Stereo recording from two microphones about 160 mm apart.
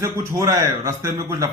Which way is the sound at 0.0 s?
20° right (ahead or behind).